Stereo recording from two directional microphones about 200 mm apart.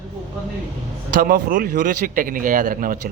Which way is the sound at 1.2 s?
45° right (ahead or behind).